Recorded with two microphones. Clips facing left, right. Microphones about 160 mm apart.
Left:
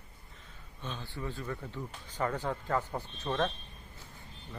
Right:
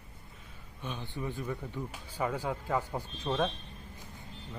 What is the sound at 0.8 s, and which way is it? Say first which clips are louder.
Speech: right 2 dB; 15° right (ahead or behind).